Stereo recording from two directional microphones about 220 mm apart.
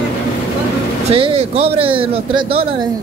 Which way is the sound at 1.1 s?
25° right (ahead or behind).